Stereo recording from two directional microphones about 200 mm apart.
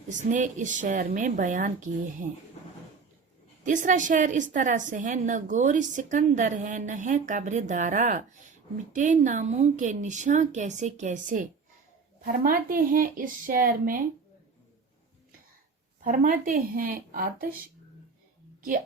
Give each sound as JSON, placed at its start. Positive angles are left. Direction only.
{"t": 0.1, "sound": "a woman's voice", "side_deg": -40}
{"t": 3.6, "sound": "a woman's voice", "side_deg": -40}
{"t": 16.0, "sound": "speech", "side_deg": -40}